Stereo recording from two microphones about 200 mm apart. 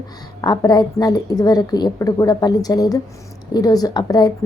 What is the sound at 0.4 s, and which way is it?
A woman's voice, 20° left (ahead or behind).